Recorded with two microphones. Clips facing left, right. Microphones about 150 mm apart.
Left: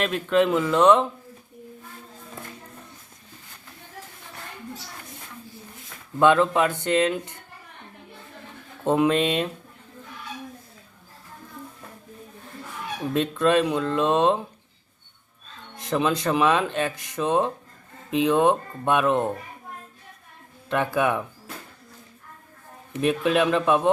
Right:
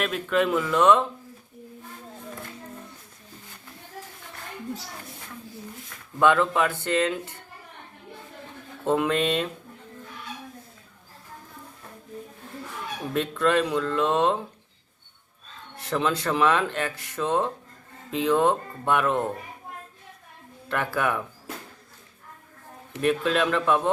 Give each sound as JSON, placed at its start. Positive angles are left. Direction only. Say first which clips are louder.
{"t": 0.0, "sound": "speech", "louder": "left 3 dB", "side_deg": 0}
{"t": 0.4, "sound": "speech", "louder": "left 1 dB", "side_deg": 20}
{"t": 6.1, "sound": "speech", "louder": "left 2 dB", "side_deg": 20}
{"t": 8.8, "sound": "speech", "louder": "left 3 dB", "side_deg": 20}
{"t": 13.1, "sound": "speech", "louder": "left 2 dB", "side_deg": 20}
{"t": 15.7, "sound": "speech", "louder": "left 2 dB", "side_deg": 15}
{"t": 20.7, "sound": "speech", "louder": "left 3 dB", "side_deg": 20}
{"t": 23.0, "sound": "speech", "louder": "left 2 dB", "side_deg": 15}